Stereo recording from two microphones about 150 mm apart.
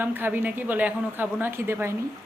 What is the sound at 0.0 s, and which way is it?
A woman's voice, 10° right (ahead or behind).